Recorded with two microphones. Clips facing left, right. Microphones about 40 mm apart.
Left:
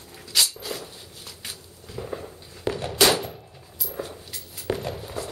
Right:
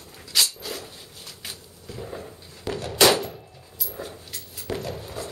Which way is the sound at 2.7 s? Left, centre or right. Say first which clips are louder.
Left 2 dB; left.